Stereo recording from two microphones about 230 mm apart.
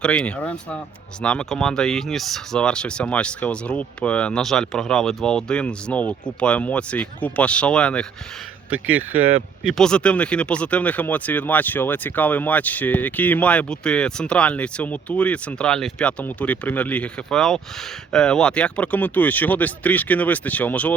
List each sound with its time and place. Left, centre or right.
0.0 s speech: centre
8.9 s speech: centre
9.8 s speech: centre